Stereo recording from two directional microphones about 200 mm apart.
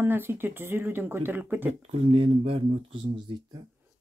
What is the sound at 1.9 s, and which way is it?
Speech, 30° right (ahead or behind).